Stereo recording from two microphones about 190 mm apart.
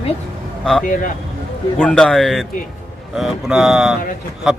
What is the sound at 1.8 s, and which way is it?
Speech, 5° left (ahead or behind).